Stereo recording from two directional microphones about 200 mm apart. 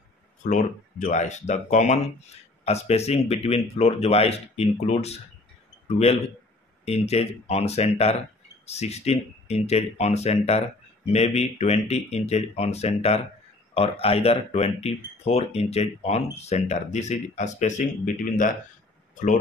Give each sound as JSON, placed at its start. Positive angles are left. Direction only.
{"t": 0.4, "sound": "speech", "side_deg": 35}
{"t": 6.8, "sound": "speech", "side_deg": 30}